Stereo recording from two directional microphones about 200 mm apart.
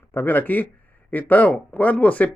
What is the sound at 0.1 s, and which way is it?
Speech, 10° left (ahead or behind).